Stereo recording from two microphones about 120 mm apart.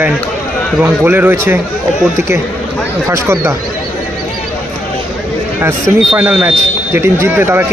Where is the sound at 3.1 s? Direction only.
20° right (ahead or behind).